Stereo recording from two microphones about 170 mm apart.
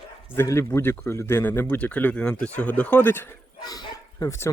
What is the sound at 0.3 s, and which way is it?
Speech, 15° left (ahead or behind).